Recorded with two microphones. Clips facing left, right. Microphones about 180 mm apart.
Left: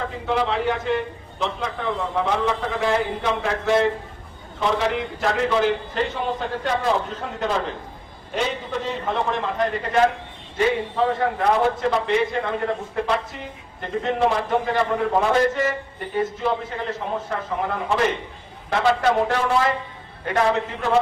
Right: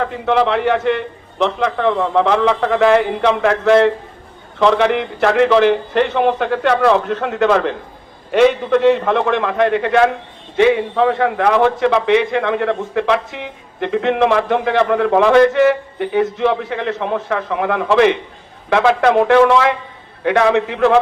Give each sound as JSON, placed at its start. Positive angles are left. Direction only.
{"t": 0.0, "sound": "a man's voice", "side_deg": -65}